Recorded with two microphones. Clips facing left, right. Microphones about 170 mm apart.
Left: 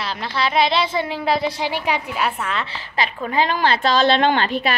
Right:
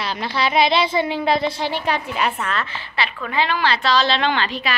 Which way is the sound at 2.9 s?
45° left (ahead or behind).